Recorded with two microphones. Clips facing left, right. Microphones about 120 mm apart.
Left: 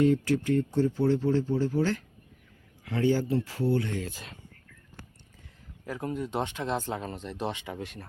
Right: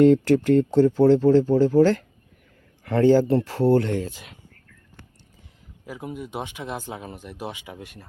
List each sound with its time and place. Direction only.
0.0 s speech: 70° right (ahead or behind); by 2.0 s 90° right
2.8 s speech: 65° right (ahead or behind)
5.8 s speech: 10° right (ahead or behind)